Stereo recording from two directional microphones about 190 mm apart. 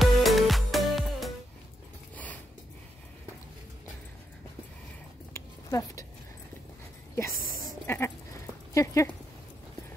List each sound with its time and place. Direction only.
0.0 s music: centre (ahead or behind)
5.3 s a sound: 15° left (ahead or behind)
7.8 s sheep: 10° left (ahead or behind)
8.7 s speech: 15° left (ahead or behind)